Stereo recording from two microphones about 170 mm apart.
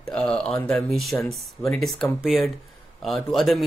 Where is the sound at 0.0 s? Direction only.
5° left (ahead or behind).